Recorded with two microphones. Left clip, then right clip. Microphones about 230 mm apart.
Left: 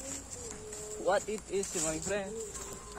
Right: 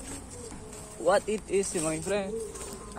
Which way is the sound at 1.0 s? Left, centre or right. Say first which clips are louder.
Right 6 dB; right.